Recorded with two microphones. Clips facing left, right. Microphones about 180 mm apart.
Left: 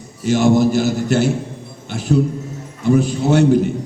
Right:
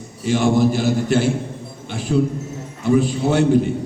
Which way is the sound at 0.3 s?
45° left (ahead or behind).